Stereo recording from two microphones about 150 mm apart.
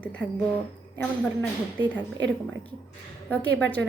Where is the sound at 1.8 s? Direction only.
30° right (ahead or behind).